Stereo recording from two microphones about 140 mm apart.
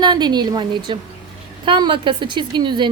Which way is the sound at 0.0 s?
30° right (ahead or behind).